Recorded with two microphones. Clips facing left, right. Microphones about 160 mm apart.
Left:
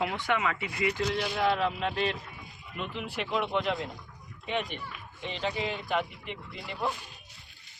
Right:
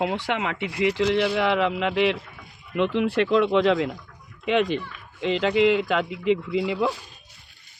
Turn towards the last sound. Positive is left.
turn(degrees=-90)